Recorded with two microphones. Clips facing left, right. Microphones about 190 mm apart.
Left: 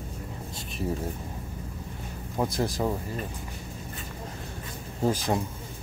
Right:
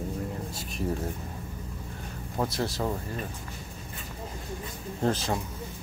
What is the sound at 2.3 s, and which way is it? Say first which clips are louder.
Speech: left 2 dB; 15° left (ahead or behind).